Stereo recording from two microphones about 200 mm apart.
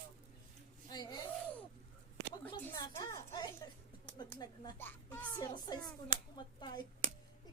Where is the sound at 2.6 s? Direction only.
15° left (ahead or behind).